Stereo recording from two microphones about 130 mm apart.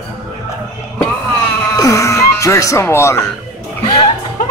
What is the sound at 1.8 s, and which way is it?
Music, 25° left (ahead or behind).